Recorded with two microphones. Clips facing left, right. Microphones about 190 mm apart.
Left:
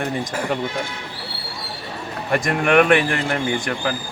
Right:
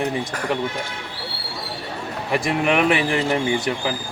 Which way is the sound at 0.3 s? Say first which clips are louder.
Left 1 dB; 25° left (ahead or behind).